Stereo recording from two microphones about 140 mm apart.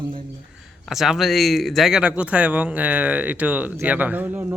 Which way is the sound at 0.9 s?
5° right (ahead or behind).